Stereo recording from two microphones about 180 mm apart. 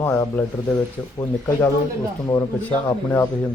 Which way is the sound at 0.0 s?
10° left (ahead or behind).